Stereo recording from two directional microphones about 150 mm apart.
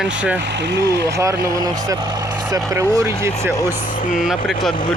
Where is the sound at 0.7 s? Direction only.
90° right.